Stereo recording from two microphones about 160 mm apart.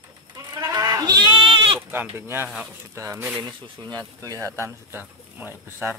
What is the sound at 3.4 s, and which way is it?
Speech, 30° right (ahead or behind).